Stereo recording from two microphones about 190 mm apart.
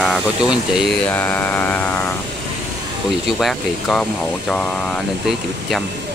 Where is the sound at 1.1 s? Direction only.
10° left (ahead or behind).